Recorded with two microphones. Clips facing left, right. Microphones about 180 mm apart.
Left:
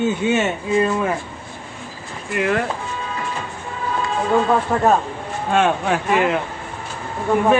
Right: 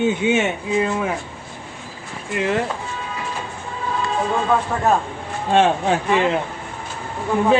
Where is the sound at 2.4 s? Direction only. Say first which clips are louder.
Left 1 dB; 20° right (ahead or behind).